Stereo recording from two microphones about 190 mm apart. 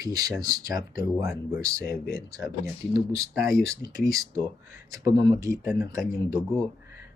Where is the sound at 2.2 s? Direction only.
20° right (ahead or behind).